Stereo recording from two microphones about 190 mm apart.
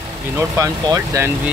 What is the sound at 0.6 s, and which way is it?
Speech, 15° right (ahead or behind).